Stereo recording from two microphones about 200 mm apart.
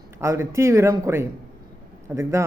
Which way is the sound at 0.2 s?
15° right (ahead or behind).